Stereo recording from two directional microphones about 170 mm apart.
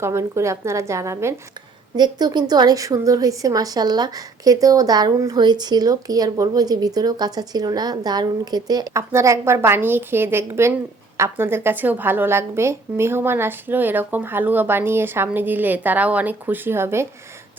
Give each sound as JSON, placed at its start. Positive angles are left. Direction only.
{"t": 0.0, "sound": "a woman's voice", "side_deg": -15}